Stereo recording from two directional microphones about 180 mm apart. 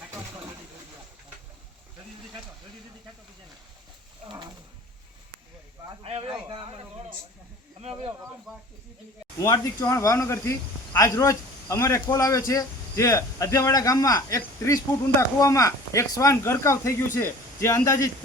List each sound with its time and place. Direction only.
6.0 s speech: 35° right (ahead or behind)
7.8 s speech: 30° right (ahead or behind)
8.5 s speech: centre (ahead or behind)
9.4 s speech: 15° left (ahead or behind)